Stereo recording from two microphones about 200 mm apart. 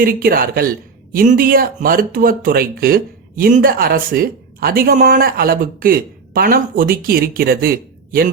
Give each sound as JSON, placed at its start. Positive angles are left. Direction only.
{"t": 0.0, "sound": "speech", "side_deg": -45}